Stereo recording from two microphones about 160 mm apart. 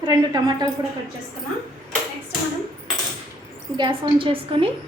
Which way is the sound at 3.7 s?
30° right (ahead or behind).